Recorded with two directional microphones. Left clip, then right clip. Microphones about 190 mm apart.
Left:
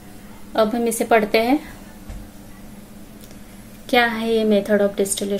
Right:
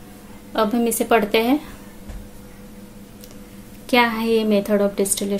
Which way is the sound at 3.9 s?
25° right (ahead or behind).